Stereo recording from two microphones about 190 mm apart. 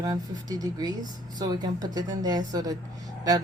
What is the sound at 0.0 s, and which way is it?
Speech, 20° right (ahead or behind).